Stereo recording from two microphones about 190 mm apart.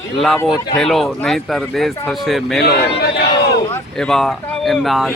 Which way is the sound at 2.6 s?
60° left (ahead or behind).